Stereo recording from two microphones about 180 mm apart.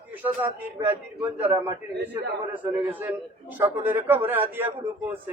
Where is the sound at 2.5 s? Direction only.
30° right (ahead or behind).